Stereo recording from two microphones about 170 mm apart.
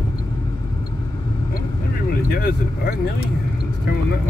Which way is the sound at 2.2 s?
65° left (ahead or behind).